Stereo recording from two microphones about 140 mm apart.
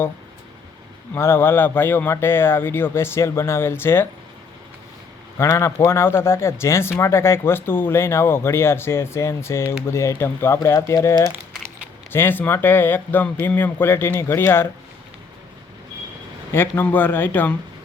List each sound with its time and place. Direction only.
1.1 s speech: 15° left (ahead or behind)
5.4 s speech: 20° left (ahead or behind)
16.5 s speech: 15° left (ahead or behind)